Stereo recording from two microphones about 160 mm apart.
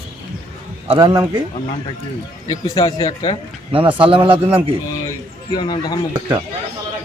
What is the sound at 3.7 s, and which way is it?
Speech, 30° right (ahead or behind).